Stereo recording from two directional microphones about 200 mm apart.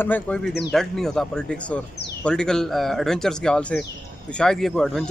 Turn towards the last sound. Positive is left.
turn(degrees=0)  # may be behind; listen again after turning